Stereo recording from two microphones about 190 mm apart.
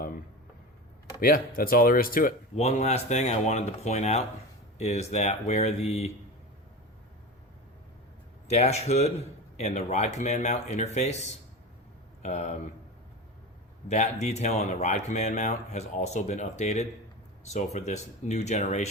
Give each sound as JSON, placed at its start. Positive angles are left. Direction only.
{"t": 1.2, "sound": "speech", "side_deg": 50}
{"t": 2.6, "sound": "speech", "side_deg": 35}
{"t": 8.4, "sound": "speech", "side_deg": 35}
{"t": 13.8, "sound": "speech", "side_deg": 35}